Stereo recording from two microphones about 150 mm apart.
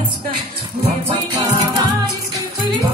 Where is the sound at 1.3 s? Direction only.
25° right (ahead or behind).